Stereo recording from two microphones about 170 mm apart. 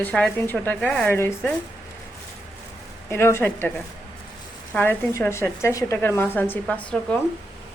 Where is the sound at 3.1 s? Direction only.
15° left (ahead or behind).